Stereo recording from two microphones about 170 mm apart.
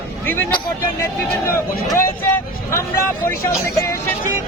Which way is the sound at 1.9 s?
15° left (ahead or behind).